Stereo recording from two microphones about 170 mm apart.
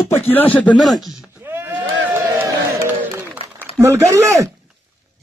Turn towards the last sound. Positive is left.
turn(degrees=-15)  # may be behind; listen again after turning